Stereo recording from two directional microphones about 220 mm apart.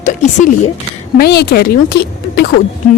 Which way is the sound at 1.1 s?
45° left (ahead or behind).